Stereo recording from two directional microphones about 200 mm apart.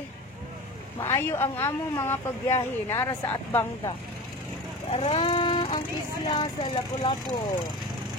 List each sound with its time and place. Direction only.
0.9 s speech: 10° left (ahead or behind)
4.9 s vehicle: 30° left (ahead or behind)
6.2 s speech: 20° left (ahead or behind)